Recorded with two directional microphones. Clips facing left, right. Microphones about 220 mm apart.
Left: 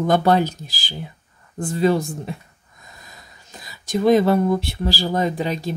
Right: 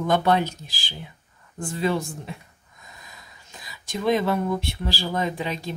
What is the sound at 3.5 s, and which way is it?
Speech, 40° left (ahead or behind).